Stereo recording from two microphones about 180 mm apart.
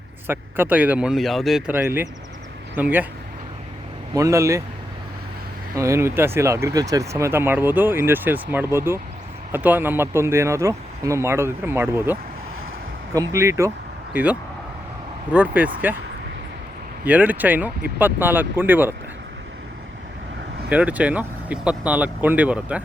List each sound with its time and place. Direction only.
0.3 s speech: 10° right (ahead or behind)
4.1 s speech: 15° right (ahead or behind)
5.7 s speech: 15° right (ahead or behind)
13.1 s speech: 15° right (ahead or behind)
17.0 s speech: 10° right (ahead or behind)
20.7 s speech: 10° right (ahead or behind)